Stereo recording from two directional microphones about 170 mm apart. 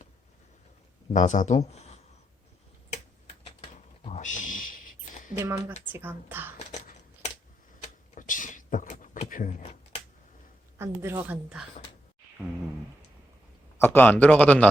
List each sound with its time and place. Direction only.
1.1 s speech: 45° left (ahead or behind)
4.0 s a sound: 45° left (ahead or behind)
5.4 s speech: 10° right (ahead or behind)
6.6 s a sound: 45° left (ahead or behind)
9.3 s speech: 50° left (ahead or behind)
10.8 s speech: 15° right (ahead or behind)
13.7 s a man's voice: 10° left (ahead or behind)